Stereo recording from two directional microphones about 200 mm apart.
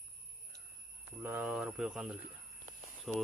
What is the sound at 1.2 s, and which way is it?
Speech, 10° right (ahead or behind).